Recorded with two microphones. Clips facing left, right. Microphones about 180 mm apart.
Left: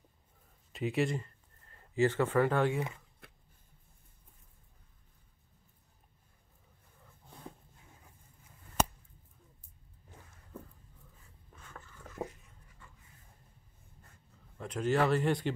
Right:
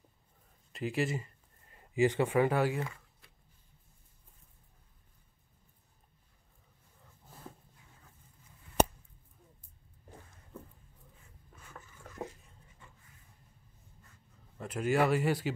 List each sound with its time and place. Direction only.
0.7 s speech: centre (ahead or behind)
3.2 s a sound: 60° left (ahead or behind)
7.2 s dog: centre (ahead or behind)
11.5 s writing: 5° right (ahead or behind)
14.6 s speech: 10° right (ahead or behind)